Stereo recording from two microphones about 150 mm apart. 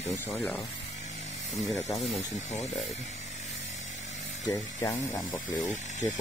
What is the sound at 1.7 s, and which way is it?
Speech, 20° left (ahead or behind).